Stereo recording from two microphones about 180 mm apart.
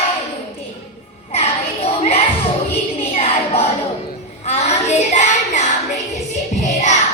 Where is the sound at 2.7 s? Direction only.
35° left (ahead or behind).